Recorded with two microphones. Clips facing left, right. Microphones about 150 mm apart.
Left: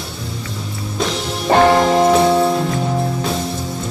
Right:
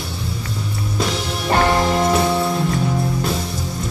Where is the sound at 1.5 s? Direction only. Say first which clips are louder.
Left 5 dB; 25° left (ahead or behind).